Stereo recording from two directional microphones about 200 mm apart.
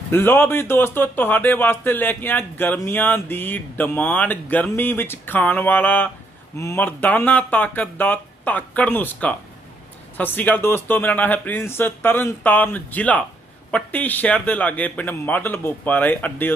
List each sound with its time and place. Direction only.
0.1 s speech: 10° left (ahead or behind)